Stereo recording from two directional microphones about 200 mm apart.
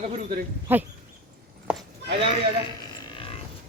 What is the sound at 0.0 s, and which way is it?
Speech, 30° right (ahead or behind).